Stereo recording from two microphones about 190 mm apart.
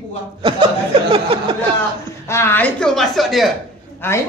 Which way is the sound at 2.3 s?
15° left (ahead or behind).